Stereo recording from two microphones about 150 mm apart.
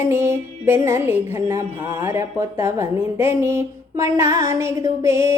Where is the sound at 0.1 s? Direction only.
15° right (ahead or behind).